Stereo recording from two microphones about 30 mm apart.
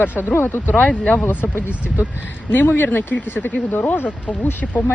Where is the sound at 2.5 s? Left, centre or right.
Left.